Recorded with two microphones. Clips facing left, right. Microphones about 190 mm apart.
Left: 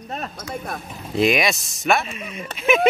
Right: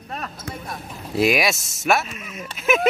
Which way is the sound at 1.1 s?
5° right (ahead or behind).